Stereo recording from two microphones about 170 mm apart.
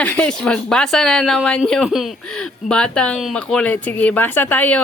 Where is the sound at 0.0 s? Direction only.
10° left (ahead or behind).